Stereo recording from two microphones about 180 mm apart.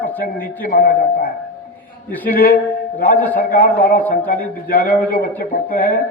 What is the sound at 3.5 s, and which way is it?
A man's voice, 50° left (ahead or behind).